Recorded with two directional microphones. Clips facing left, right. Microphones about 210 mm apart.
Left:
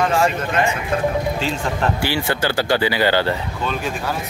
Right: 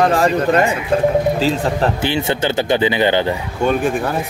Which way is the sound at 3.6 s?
50° right (ahead or behind).